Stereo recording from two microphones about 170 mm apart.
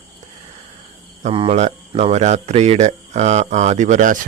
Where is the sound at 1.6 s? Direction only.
45° right (ahead or behind).